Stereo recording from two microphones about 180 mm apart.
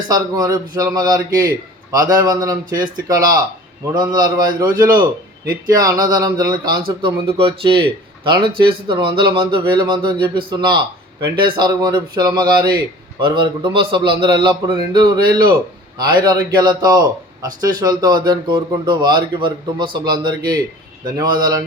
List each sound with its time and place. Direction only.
0.1 s speech: 20° right (ahead or behind)